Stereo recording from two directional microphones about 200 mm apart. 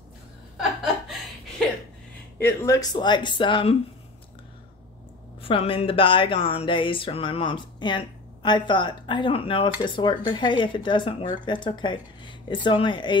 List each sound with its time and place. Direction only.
2.3 s speech: 10° left (ahead or behind)
5.4 s speech: 25° left (ahead or behind)